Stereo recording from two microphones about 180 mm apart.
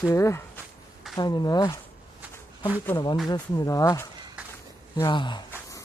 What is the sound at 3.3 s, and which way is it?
Speech, 20° left (ahead or behind).